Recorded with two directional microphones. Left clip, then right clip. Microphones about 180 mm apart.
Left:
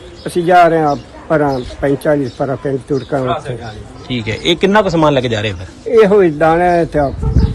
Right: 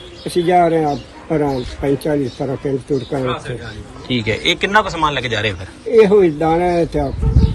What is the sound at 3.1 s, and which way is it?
Speech, 30° left (ahead or behind).